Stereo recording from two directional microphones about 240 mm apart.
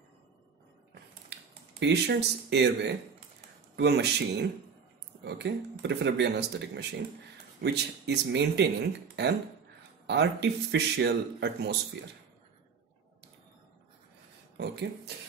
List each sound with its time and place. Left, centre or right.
1.3 s speech: right